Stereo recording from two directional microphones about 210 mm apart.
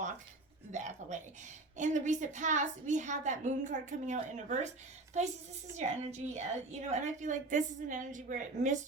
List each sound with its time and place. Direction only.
0.7 s a woman's voice: 35° right (ahead or behind)